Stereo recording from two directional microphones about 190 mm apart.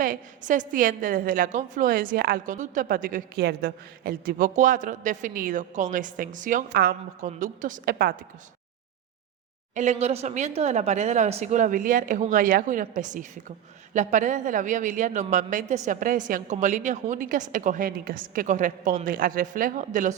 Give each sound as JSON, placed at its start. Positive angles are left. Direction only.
{"t": 0.0, "sound": "a woman's voice", "side_deg": -45}
{"t": 9.7, "sound": "a woman's voice", "side_deg": -35}